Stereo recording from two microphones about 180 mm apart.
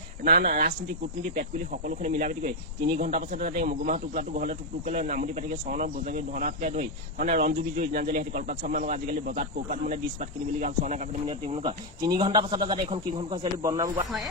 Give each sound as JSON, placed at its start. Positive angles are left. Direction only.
{"t": 0.3, "sound": "a man's voice", "side_deg": -55}